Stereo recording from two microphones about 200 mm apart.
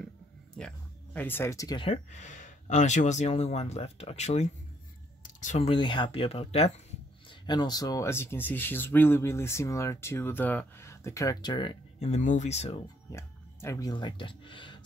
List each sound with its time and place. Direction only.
0.6 s speech: 5° left (ahead or behind); by 2.0 s 20° left (ahead or behind)
2.0 s speech: 35° left (ahead or behind)
12.1 s speech: 40° left (ahead or behind)
13.1 s speech: 15° left (ahead or behind)